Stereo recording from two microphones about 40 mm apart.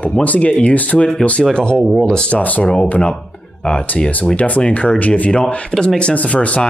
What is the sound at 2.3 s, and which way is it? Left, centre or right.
Speech, left.